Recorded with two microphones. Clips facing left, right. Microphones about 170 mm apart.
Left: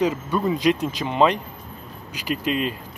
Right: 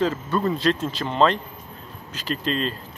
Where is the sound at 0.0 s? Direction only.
15° left (ahead or behind).